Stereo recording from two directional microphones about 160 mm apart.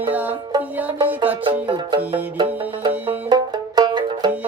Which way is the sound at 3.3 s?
25° right (ahead or behind).